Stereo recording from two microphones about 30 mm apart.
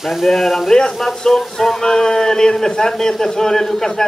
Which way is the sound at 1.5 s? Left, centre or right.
Centre.